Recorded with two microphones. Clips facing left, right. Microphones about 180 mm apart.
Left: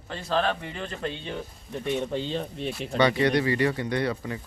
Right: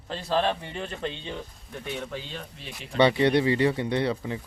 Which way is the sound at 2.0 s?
30° left (ahead or behind).